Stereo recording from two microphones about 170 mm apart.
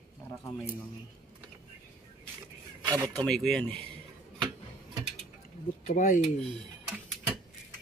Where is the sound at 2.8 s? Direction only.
20° right (ahead or behind).